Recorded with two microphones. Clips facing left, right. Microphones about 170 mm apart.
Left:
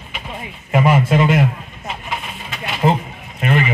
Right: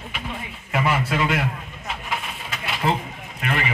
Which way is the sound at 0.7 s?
20° left (ahead or behind).